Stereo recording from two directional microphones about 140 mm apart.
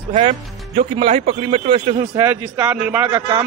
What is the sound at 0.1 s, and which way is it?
Speech, 60° right (ahead or behind).